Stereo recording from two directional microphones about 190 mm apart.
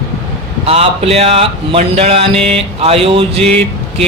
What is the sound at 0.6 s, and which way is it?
Speech, 30° right (ahead or behind).